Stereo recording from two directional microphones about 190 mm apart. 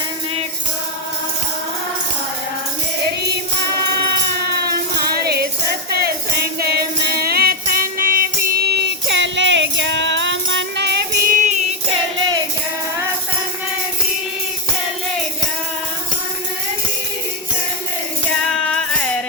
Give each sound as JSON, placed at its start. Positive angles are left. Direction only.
{"t": 4.5, "sound": "music", "side_deg": -55}
{"t": 18.6, "sound": "music", "side_deg": 5}